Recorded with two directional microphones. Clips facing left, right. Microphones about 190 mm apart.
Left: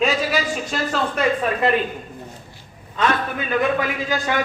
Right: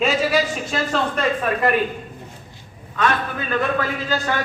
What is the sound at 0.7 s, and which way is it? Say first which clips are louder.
Speech: right 2 dB; centre (ahead or behind).